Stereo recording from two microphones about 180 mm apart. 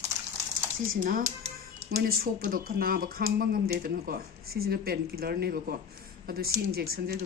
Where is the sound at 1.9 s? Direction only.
60° right (ahead or behind).